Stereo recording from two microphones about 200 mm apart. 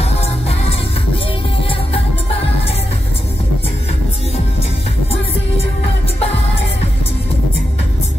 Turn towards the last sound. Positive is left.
turn(degrees=30)  # may be behind; listen again after turning